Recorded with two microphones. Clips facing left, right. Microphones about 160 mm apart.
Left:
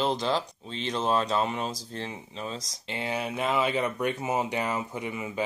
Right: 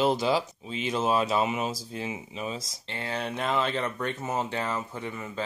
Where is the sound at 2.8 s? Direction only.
15° left (ahead or behind).